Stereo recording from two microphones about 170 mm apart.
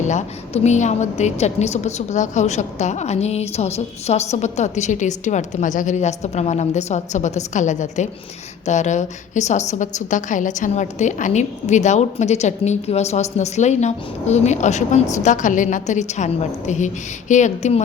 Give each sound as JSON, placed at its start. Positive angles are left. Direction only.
{"t": 0.0, "sound": "a woman's voice", "side_deg": 45}